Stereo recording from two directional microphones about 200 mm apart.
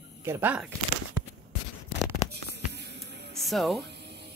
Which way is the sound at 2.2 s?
55° right (ahead or behind).